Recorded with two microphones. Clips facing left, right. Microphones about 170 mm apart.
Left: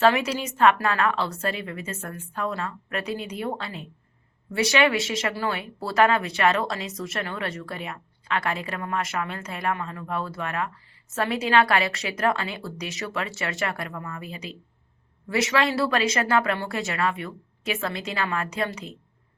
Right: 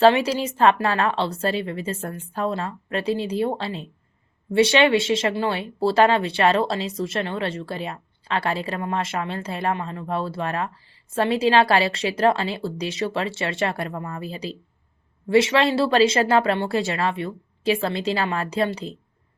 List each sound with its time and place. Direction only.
0.0 s speech: 30° right (ahead or behind)